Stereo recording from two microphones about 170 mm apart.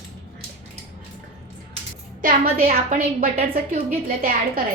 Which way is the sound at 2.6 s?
40° right (ahead or behind).